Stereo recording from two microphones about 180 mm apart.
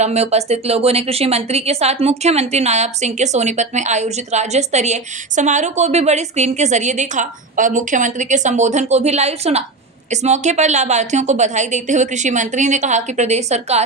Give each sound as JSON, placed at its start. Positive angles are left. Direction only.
{"t": 0.0, "sound": "a woman's voice", "side_deg": -35}